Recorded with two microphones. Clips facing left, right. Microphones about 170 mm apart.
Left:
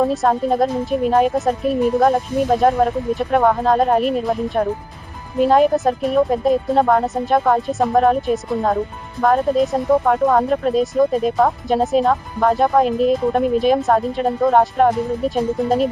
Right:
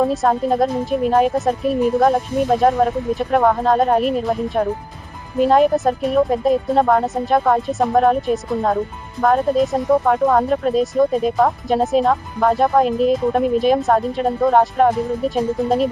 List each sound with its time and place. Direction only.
0.0 s speech: centre (ahead or behind)